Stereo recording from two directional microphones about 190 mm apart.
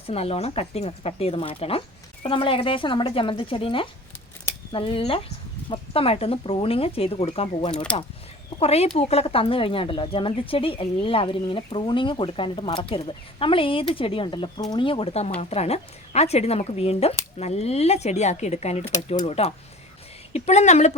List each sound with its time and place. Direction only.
0.1 s speech: 30° left (ahead or behind)